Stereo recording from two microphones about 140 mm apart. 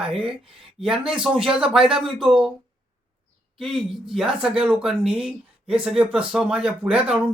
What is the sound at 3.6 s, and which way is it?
Speech, centre (ahead or behind).